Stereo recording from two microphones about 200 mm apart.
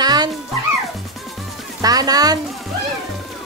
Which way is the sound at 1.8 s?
20° right (ahead or behind).